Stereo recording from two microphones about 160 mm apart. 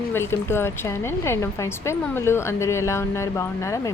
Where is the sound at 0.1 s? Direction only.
15° left (ahead or behind).